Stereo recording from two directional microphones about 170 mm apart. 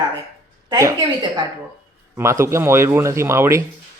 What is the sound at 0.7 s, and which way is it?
A woman's voice, 20° right (ahead or behind).